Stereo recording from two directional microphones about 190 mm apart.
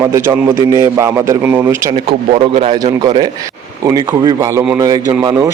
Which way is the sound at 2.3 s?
30° right (ahead or behind).